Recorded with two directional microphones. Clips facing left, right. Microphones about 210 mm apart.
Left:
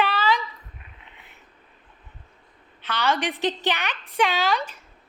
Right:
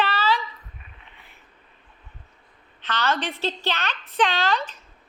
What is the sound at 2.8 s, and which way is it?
A woman's voice, 10° left (ahead or behind).